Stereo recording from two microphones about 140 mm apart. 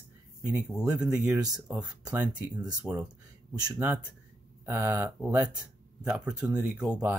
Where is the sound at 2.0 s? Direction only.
10° right (ahead or behind).